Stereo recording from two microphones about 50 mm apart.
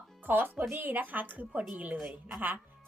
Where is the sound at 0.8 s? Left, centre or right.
Right.